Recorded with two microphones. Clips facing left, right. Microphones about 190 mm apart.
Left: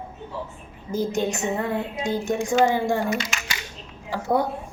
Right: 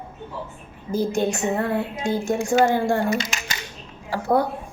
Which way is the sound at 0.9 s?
15° left (ahead or behind).